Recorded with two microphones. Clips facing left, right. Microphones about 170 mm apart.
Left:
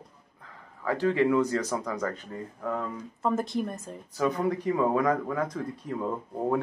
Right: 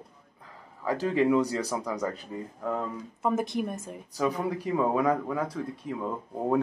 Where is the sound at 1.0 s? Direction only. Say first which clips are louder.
Even; 15° right (ahead or behind).